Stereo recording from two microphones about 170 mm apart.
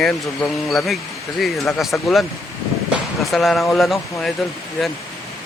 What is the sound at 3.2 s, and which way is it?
Mantra, centre (ahead or behind).